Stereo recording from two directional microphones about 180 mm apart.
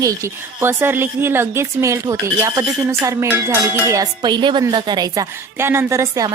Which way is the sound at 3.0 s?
15° right (ahead or behind).